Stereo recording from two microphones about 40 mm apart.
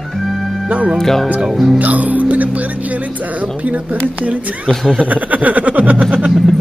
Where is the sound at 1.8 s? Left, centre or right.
Right.